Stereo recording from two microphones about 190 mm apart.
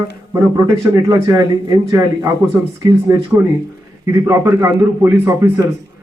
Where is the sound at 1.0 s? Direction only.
20° right (ahead or behind).